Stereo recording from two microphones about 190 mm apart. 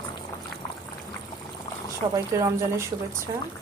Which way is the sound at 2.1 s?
15° right (ahead or behind).